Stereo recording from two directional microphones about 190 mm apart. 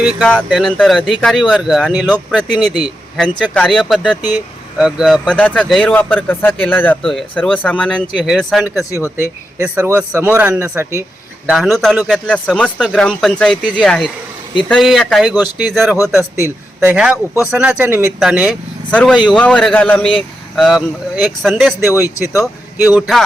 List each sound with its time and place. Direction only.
0.0 s speech: 5° left (ahead or behind)
4.2 s speech: 20° left (ahead or behind)
4.8 s speech: 5° right (ahead or behind)
8.9 s speech: 15° left (ahead or behind)
9.1 s speech: 10° right (ahead or behind)
11.4 s speech: centre (ahead or behind)
16.3 s speech: 10° right (ahead or behind)
23.0 s speech: centre (ahead or behind)